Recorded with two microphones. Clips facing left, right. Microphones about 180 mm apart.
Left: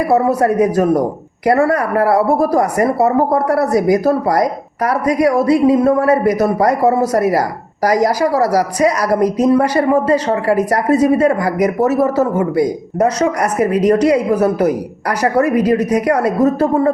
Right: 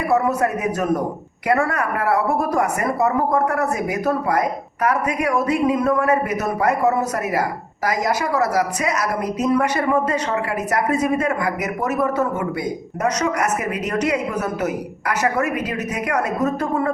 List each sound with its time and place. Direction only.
0.0 s speech: 35° left (ahead or behind)